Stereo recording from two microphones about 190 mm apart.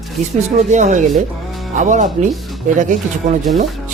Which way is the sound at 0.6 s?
40° right (ahead or behind).